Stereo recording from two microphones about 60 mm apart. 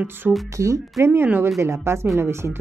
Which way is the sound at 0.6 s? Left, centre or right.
Right.